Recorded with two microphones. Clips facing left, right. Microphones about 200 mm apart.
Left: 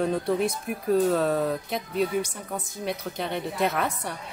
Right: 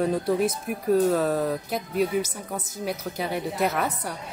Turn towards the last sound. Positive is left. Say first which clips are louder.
# right 1 dB
turn(degrees=-5)  # may be behind; listen again after turning